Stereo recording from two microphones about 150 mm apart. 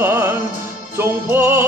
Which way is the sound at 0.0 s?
15° right (ahead or behind).